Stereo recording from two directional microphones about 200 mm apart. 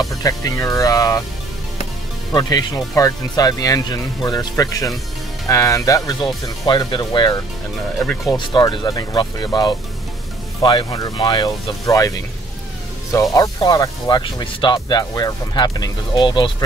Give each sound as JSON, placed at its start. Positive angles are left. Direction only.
{"t": 0.0, "sound": "speech", "side_deg": 15}
{"t": 2.3, "sound": "speech", "side_deg": 15}
{"t": 13.1, "sound": "speech", "side_deg": 15}